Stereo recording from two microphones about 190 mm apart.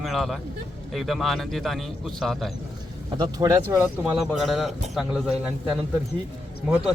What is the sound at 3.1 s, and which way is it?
Speech, 20° right (ahead or behind).